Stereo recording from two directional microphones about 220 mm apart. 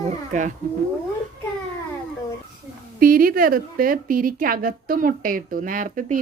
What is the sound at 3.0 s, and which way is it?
A woman's voice, 40° right (ahead or behind).